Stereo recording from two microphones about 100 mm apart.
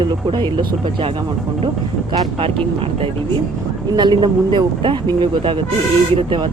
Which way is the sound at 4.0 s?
50° right (ahead or behind).